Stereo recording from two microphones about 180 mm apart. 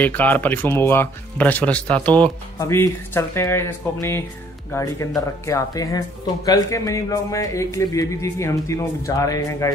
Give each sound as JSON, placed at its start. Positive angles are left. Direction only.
{"t": 0.0, "sound": "speech", "side_deg": 10}